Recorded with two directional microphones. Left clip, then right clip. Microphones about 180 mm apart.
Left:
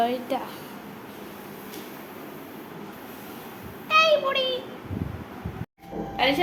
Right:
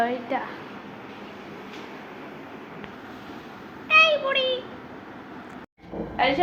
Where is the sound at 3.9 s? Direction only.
10° left (ahead or behind).